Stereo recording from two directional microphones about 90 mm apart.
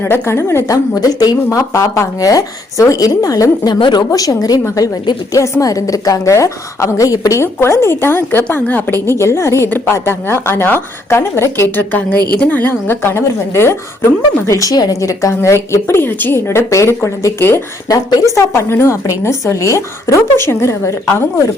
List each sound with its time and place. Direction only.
0.0 s a woman's voice: 30° left (ahead or behind); by 3.8 s 45° left (ahead or behind)
3.8 s a woman's voice: 65° left (ahead or behind)
4.1 s a woman's voice: 40° left (ahead or behind)
15.4 s a woman's voice: 30° left (ahead or behind)
17.8 s a woman's voice: 45° left (ahead or behind)